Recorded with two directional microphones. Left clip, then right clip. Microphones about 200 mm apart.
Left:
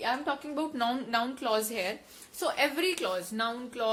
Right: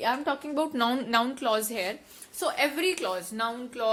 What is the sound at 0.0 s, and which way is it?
A woman's voice, 45° right (ahead or behind).